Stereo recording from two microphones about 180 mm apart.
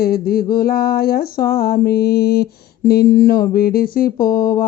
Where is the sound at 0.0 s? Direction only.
55° left (ahead or behind).